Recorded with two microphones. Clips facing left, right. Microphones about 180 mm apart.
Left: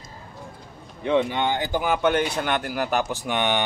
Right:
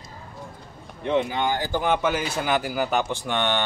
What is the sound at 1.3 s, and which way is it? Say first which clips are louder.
Speech: left 1 dB; 25° left (ahead or behind).